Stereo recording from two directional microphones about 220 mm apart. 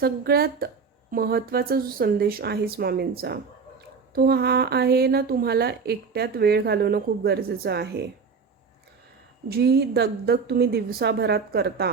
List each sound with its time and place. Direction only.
0.0 s a woman's voice: 45° right (ahead or behind)
9.5 s a woman's voice: 45° right (ahead or behind)